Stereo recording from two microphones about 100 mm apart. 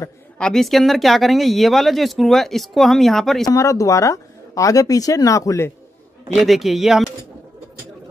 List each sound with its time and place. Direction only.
0.4 s speech: 5° left (ahead or behind)
3.4 s speech: 35° left (ahead or behind)
6.2 s speech: centre (ahead or behind)